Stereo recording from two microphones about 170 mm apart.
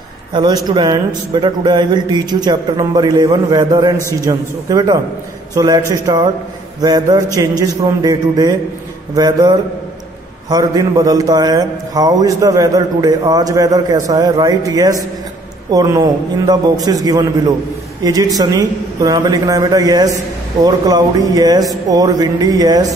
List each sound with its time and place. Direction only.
0.3 s a man's voice: 25° right (ahead or behind)